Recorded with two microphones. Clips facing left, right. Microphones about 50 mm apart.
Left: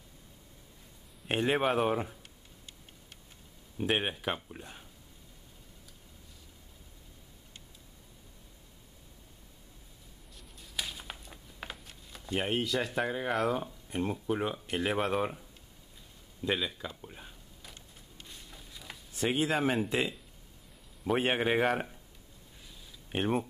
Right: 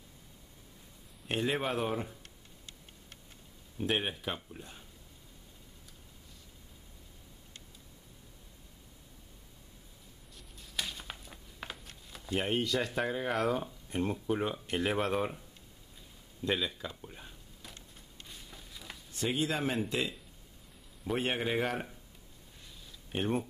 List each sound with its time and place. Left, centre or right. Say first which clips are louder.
1.3 s speech: left 4 dB; left
3.7 s speech: left 2 dB; centre
10.3 s a sound: even; centre
16.4 s speech: left 1 dB; centre
17.7 s a sound: even; centre
19.2 s speech: left 3 dB; centre
21.0 s speech: left 4 dB; left
23.1 s speech: left 2 dB; centre